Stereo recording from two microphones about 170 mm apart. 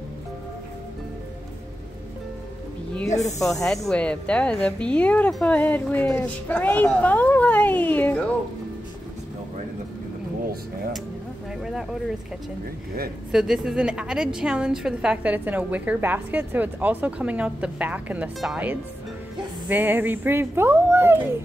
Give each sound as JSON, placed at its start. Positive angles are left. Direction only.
{"t": 3.1, "sound": "speech", "side_deg": 40}
{"t": 3.5, "sound": "speech", "side_deg": 0}
{"t": 11.6, "sound": "speech", "side_deg": 0}
{"t": 13.3, "sound": "a woman's voice", "side_deg": -5}